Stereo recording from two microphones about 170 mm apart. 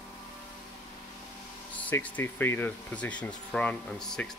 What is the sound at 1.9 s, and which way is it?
Speech, 10° left (ahead or behind).